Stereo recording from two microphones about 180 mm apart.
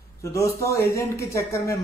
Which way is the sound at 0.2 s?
15° left (ahead or behind).